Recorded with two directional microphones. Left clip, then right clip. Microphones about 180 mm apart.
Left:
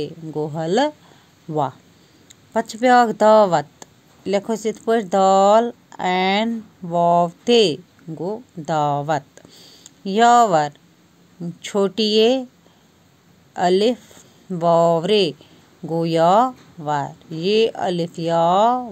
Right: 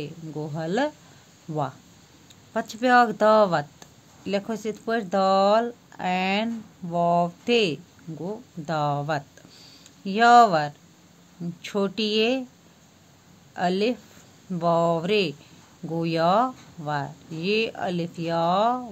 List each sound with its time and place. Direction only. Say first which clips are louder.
0.0 s speech: left 9 dB; 30° left (ahead or behind)
13.5 s a woman's voice: left 7 dB; 35° left (ahead or behind)